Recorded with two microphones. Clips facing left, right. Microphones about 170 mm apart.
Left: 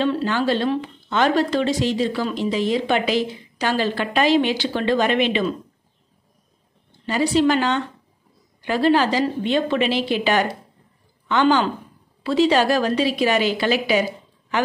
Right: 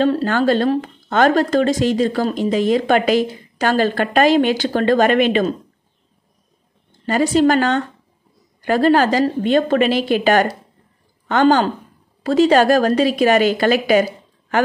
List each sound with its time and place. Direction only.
0.0 s speech: 45° right (ahead or behind)
6.9 s speech: 45° right (ahead or behind)